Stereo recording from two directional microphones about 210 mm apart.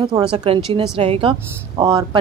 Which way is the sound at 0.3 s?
25° right (ahead or behind).